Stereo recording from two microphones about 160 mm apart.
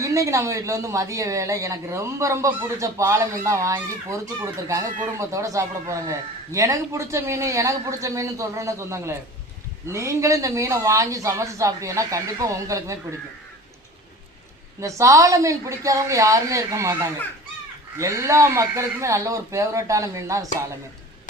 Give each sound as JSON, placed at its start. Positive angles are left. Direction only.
{"t": 0.0, "sound": "speech", "side_deg": -20}
{"t": 14.8, "sound": "speech", "side_deg": -20}